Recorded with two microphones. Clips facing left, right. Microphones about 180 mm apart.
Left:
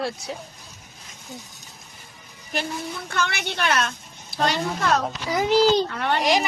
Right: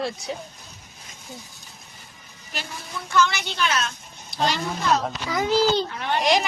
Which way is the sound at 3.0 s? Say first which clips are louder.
Right 6 dB; 60° left (ahead or behind).